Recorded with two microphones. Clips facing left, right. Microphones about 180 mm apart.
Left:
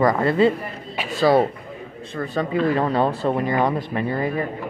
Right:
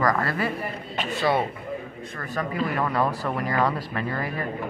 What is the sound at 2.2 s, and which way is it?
Speech, 25° left (ahead or behind).